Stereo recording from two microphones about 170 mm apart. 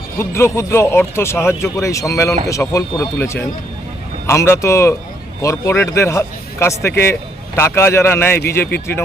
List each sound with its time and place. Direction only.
0.2 s speech: 15° left (ahead or behind)